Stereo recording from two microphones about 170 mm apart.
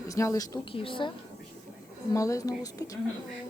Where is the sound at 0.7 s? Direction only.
30° left (ahead or behind).